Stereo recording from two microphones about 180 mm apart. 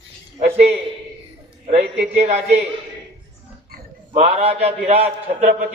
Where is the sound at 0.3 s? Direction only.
35° right (ahead or behind).